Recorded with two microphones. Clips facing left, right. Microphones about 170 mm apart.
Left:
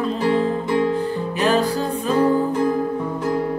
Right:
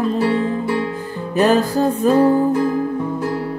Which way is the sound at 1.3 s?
45° right (ahead or behind).